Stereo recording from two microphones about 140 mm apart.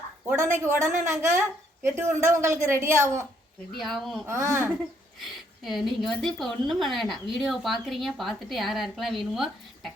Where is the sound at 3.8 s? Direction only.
Centre (ahead or behind).